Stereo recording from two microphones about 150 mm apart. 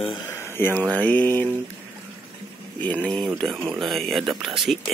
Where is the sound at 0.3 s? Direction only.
15° left (ahead or behind).